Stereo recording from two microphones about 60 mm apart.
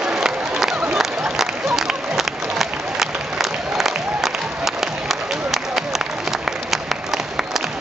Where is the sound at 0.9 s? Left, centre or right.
Centre.